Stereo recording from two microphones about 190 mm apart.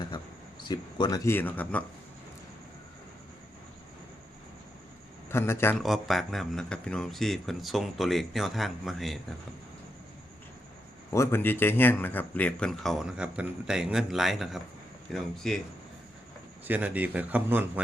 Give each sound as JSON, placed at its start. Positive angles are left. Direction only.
{"t": 0.7, "sound": "speech", "side_deg": 20}
{"t": 5.3, "sound": "speech", "side_deg": 15}
{"t": 5.8, "sound": "speech", "side_deg": 0}
{"t": 11.1, "sound": "speech", "side_deg": 15}
{"t": 16.6, "sound": "a man's voice", "side_deg": -10}